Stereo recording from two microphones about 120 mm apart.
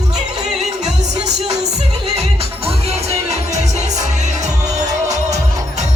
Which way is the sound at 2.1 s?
60° right (ahead or behind).